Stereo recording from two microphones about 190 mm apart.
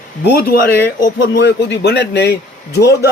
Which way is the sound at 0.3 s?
55° left (ahead or behind).